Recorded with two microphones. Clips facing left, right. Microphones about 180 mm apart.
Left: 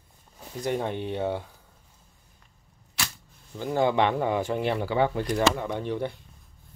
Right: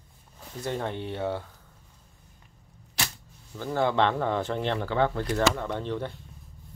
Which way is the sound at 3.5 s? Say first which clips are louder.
Left 2 dB; 15° left (ahead or behind).